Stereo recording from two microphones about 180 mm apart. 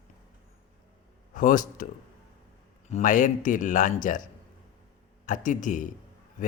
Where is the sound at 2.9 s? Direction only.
45° left (ahead or behind).